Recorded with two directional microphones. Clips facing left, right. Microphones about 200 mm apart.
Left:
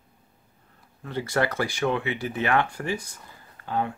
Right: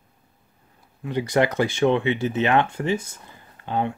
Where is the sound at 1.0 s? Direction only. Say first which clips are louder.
Right 5 dB; 15° right (ahead or behind).